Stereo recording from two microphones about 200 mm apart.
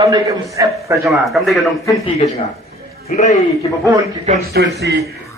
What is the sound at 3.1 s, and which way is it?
Speech, 40° left (ahead or behind).